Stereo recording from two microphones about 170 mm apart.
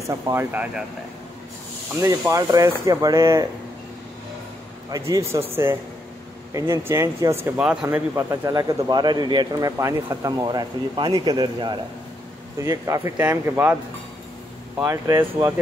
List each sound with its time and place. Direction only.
0.0 s speech: 15° right (ahead or behind)
2.0 s speech: 20° right (ahead or behind)
4.9 s speech: 20° right (ahead or behind)
14.9 s speech: 15° right (ahead or behind)